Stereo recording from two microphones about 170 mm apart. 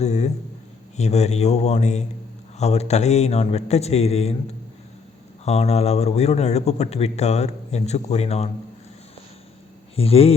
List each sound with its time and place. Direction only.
0.0 s a man's voice: 40° left (ahead or behind)
5.5 s a man's voice: 40° left (ahead or behind)
9.9 s speech: 35° left (ahead or behind)